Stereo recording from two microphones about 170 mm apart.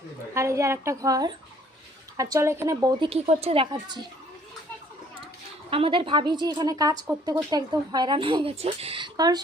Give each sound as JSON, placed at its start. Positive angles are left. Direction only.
{"t": 0.3, "sound": "a woman's voice", "side_deg": -15}
{"t": 3.1, "sound": "speech", "side_deg": -35}
{"t": 5.7, "sound": "speech", "side_deg": -30}